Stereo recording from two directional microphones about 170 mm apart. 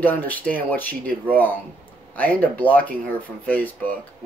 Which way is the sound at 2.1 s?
10° left (ahead or behind).